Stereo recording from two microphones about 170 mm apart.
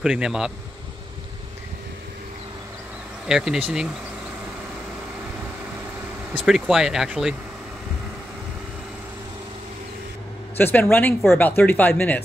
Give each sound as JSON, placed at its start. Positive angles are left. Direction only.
{"t": 0.0, "sound": "speech", "side_deg": -5}
{"t": 3.3, "sound": "speech", "side_deg": -5}
{"t": 6.4, "sound": "speech", "side_deg": 0}
{"t": 10.6, "sound": "speech", "side_deg": 10}